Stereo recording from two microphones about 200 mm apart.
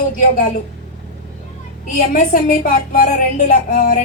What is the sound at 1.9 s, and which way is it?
Speech, 40° left (ahead or behind).